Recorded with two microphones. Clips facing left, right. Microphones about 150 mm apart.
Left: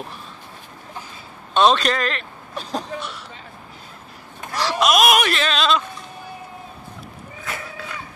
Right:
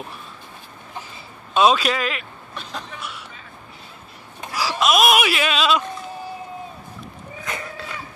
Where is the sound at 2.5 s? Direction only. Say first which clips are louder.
Left 6 dB; 40° left (ahead or behind).